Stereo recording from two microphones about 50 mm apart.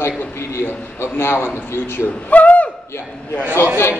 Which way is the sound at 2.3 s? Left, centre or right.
Left.